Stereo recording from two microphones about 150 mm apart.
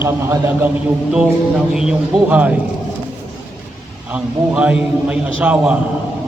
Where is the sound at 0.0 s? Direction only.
15° right (ahead or behind).